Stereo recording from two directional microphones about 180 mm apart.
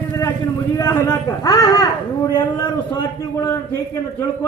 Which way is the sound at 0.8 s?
15° left (ahead or behind).